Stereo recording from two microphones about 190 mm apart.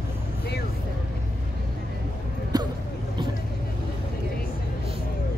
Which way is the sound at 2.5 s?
20° right (ahead or behind).